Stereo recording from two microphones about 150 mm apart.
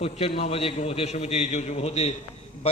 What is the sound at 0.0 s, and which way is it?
A man's voice, 40° left (ahead or behind).